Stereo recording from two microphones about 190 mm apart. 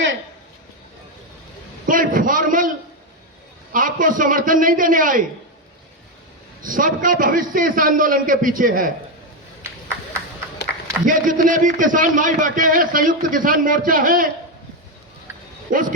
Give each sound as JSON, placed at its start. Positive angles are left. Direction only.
{"t": 1.9, "sound": "a man's voice", "side_deg": -45}
{"t": 3.7, "sound": "a man's voice", "side_deg": -45}
{"t": 6.7, "sound": "a man's voice", "side_deg": -45}
{"t": 10.7, "sound": "a sound", "side_deg": 60}
{"t": 11.0, "sound": "a man's voice", "side_deg": -45}
{"t": 15.7, "sound": "a man's voice", "side_deg": -45}